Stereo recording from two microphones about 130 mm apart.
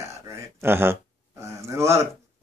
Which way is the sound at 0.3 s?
20° right (ahead or behind).